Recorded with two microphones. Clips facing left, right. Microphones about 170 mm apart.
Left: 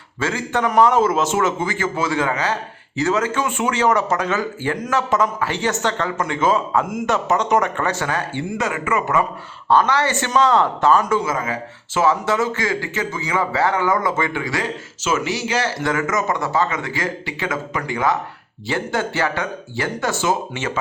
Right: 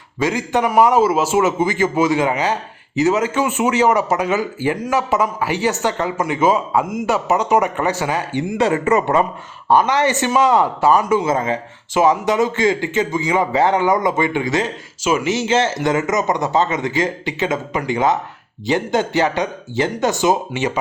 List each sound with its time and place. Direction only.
0.2 s a man's voice: 15° right (ahead or behind)
8.5 s speech: 35° right (ahead or behind)
9.6 s a man's voice: 15° right (ahead or behind)
11.3 s speech: 25° right (ahead or behind)